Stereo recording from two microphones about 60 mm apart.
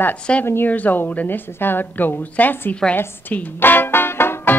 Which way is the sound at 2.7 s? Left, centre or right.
Centre.